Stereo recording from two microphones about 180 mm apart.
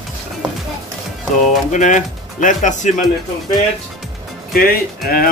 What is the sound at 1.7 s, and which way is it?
A man's voice, 45° left (ahead or behind).